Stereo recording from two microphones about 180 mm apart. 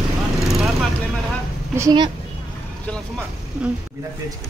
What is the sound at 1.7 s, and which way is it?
Speech, 20° right (ahead or behind).